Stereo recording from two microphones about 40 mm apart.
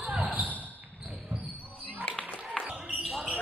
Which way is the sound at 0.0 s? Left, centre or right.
Right.